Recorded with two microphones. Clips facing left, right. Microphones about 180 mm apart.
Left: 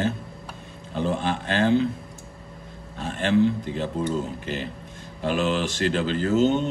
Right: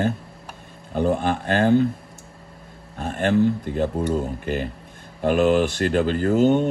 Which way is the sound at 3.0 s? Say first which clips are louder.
Right 1 dB; 50° right (ahead or behind).